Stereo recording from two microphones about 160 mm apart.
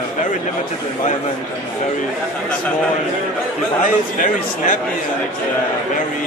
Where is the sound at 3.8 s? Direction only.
55° left (ahead or behind).